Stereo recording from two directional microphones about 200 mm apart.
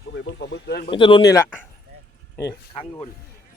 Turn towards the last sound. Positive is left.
turn(degrees=25)  # may be behind; listen again after turning